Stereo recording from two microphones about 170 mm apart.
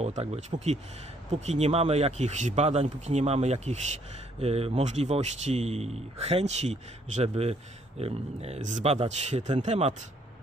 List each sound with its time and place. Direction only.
0.0 s speech: 40° right (ahead or behind)